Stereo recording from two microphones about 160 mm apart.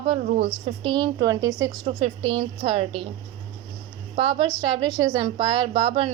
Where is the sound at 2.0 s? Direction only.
35° right (ahead or behind).